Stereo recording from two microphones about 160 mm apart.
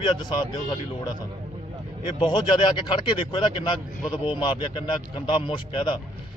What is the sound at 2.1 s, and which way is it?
Speech, 30° left (ahead or behind).